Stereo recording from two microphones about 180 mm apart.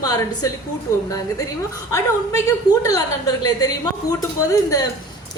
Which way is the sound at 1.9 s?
15° left (ahead or behind).